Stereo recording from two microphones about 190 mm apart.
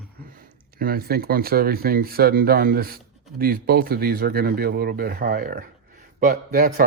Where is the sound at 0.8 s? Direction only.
50° right (ahead or behind).